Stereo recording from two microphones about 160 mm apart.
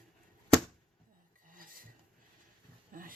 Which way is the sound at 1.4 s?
60° right (ahead or behind).